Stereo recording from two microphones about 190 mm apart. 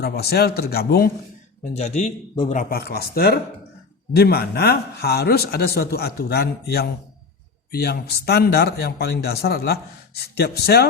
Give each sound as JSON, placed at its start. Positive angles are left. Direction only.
{"t": 0.0, "sound": "speech", "side_deg": 55}
{"t": 1.7, "sound": "a man's voice", "side_deg": 35}
{"t": 2.6, "sound": "speech", "side_deg": 50}